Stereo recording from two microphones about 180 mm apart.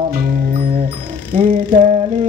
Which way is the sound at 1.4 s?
40° right (ahead or behind).